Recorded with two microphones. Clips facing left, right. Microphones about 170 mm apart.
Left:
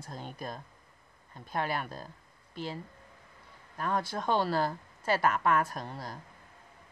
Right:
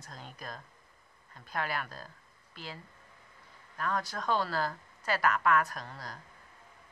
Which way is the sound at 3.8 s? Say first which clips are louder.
Left 2 dB; 25° left (ahead or behind).